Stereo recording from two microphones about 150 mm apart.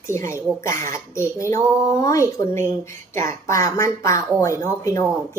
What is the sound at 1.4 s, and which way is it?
Speech, 20° left (ahead or behind).